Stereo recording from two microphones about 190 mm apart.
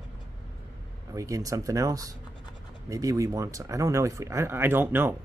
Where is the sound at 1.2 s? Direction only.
15° right (ahead or behind).